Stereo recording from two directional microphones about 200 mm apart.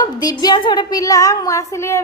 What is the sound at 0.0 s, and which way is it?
A woman's voice, 20° left (ahead or behind).